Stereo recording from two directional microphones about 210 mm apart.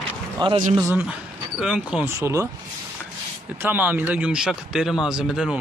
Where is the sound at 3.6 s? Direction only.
10° right (ahead or behind).